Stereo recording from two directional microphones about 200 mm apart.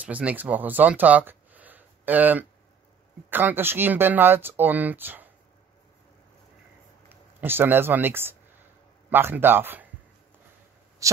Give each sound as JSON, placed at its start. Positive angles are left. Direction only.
{"t": 0.0, "sound": "speech", "side_deg": -5}
{"t": 7.1, "sound": "speech", "side_deg": -10}
{"t": 11.0, "sound": "a sound", "side_deg": -15}